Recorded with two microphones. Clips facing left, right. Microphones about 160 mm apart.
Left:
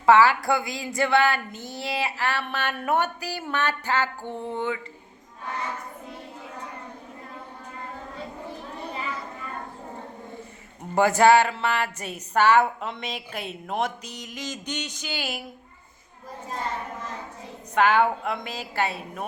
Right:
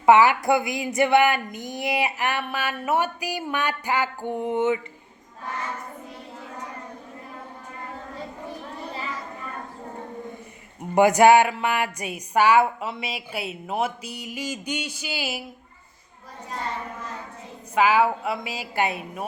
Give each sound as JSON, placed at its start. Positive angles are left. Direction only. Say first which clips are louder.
{"t": 0.0, "sound": "speech", "louder": "right 1 dB", "side_deg": -20}
{"t": 10.9, "sound": "speech", "louder": "right 3 dB", "side_deg": -15}
{"t": 17.7, "sound": "speech", "louder": "right 1 dB", "side_deg": -5}